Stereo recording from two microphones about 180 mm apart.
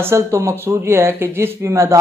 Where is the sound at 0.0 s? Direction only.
15° right (ahead or behind).